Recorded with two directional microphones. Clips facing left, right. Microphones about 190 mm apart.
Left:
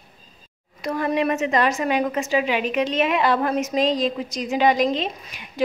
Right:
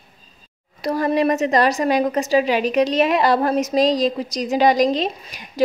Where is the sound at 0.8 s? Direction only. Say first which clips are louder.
Right 4 dB; 35° right (ahead or behind).